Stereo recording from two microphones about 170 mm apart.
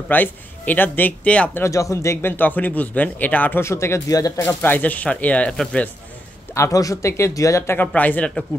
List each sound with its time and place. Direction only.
0.1 s speech: 10° left (ahead or behind)
6.5 s speech: 20° left (ahead or behind)